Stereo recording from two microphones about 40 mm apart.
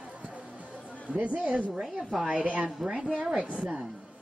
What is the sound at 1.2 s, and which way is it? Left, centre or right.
A woman's voice, right.